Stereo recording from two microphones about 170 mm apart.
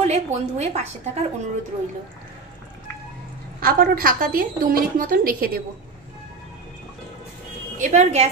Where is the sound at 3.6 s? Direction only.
60° right (ahead or behind).